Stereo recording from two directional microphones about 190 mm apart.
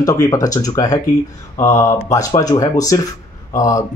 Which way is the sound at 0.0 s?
20° left (ahead or behind).